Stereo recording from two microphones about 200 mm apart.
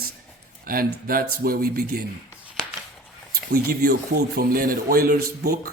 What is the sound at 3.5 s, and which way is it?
Speech, 50° right (ahead or behind).